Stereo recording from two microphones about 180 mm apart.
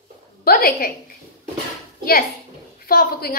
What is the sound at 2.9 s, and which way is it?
Speech, 55° left (ahead or behind).